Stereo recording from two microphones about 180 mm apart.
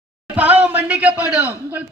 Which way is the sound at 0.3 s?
10° right (ahead or behind).